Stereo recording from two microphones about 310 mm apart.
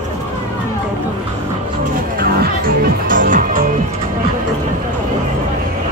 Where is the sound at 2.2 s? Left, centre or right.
Right.